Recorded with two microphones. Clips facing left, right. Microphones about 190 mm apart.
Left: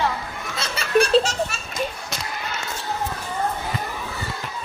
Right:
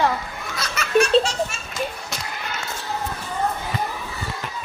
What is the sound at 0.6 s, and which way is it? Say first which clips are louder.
Belly laugh: even; 30° left (ahead or behind).